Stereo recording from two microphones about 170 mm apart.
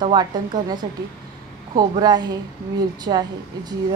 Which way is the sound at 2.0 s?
25° right (ahead or behind).